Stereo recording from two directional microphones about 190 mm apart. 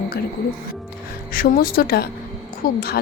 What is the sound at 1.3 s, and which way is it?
A woman's voice, 50° left (ahead or behind).